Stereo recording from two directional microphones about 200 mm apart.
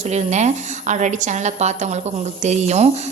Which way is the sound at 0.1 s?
35° right (ahead or behind).